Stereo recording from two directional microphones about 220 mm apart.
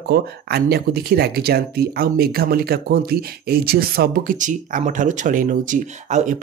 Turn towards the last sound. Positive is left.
turn(degrees=-35)  # may be behind; listen again after turning